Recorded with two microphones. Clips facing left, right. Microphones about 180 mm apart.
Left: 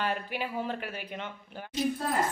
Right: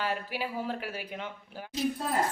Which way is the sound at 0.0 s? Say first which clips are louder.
Left 1 dB; 5° right (ahead or behind).